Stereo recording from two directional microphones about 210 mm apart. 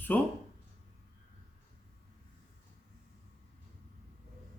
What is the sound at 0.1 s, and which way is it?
Speech, 10° left (ahead or behind).